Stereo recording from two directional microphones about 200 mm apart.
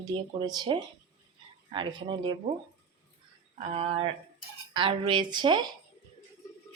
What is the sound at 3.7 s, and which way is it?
Speech, 30° right (ahead or behind).